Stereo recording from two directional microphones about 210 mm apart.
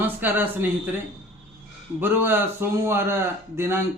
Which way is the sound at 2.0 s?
10° right (ahead or behind).